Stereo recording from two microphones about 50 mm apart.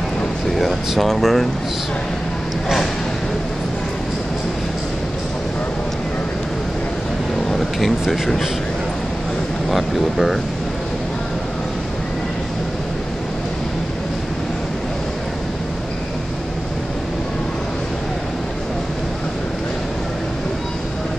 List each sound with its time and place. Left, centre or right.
0.5 s speech: centre
8.1 s speech: centre
9.7 s speech: centre